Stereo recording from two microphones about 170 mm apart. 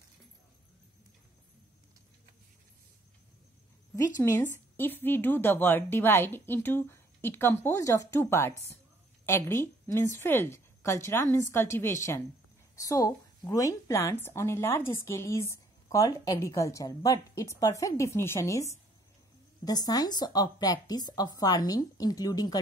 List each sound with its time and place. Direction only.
4.2 s a woman's voice: 15° left (ahead or behind)